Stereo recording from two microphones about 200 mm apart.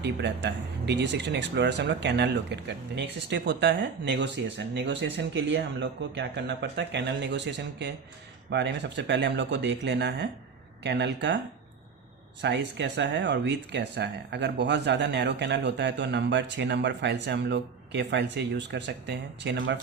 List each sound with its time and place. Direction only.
0.0 s speech: 60° right (ahead or behind)
12.4 s speech: 60° right (ahead or behind)